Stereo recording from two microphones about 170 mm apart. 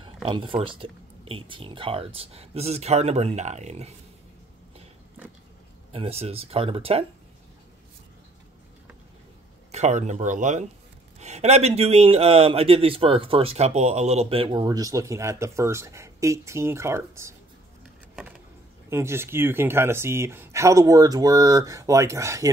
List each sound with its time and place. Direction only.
0.0 s speech: 30° right (ahead or behind)
5.9 s speech: 35° right (ahead or behind)
9.7 s speech: 40° right (ahead or behind); by 17.4 s 15° right (ahead or behind)
18.9 s speech: 15° right (ahead or behind)